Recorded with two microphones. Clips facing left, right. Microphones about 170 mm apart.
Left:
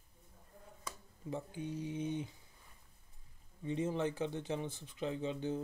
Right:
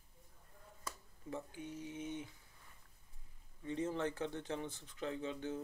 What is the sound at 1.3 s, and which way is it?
Speech, 25° left (ahead or behind).